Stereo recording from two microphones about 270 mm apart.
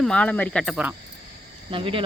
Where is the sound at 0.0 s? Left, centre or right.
Centre.